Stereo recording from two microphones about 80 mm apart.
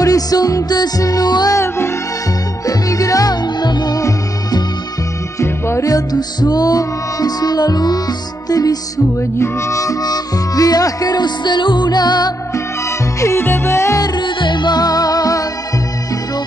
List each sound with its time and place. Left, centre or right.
0.0 s music: left
2.6 s music: left
5.4 s music: left
9.4 s harmonica: left
13.2 s music: left
14.0 s music: left